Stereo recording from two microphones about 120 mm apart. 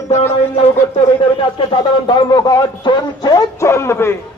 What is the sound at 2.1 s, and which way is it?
A man's voice, 35° left (ahead or behind).